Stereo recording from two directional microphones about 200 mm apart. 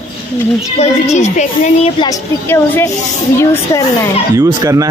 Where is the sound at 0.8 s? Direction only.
35° left (ahead or behind).